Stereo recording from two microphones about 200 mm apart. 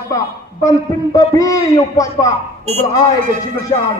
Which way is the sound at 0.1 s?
15° left (ahead or behind).